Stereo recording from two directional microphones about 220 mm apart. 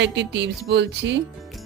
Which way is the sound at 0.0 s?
55° right (ahead or behind).